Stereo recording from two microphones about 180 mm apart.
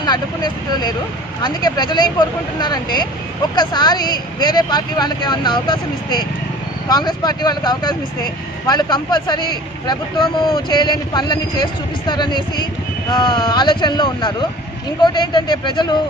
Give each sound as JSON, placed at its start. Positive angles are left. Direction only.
{"t": 0.0, "sound": "speech", "side_deg": 20}